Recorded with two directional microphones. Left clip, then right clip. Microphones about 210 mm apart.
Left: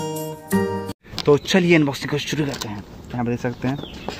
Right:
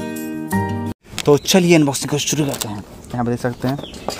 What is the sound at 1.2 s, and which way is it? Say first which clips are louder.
Speech: right 3 dB; 35° right (ahead or behind).